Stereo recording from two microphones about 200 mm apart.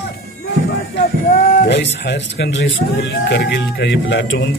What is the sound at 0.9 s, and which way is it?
Speech, 60° left (ahead or behind).